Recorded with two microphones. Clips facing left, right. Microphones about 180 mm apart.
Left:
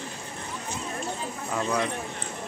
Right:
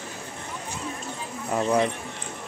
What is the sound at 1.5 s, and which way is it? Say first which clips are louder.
Speech: right 5 dB; 25° right (ahead or behind).